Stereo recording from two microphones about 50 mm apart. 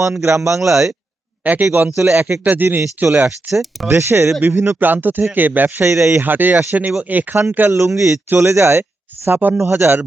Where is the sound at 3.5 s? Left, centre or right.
Centre.